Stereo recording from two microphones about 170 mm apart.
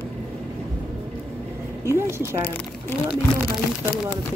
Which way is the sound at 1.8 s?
15° right (ahead or behind).